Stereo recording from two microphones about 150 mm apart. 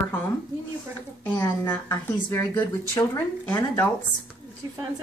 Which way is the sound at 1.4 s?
15° left (ahead or behind).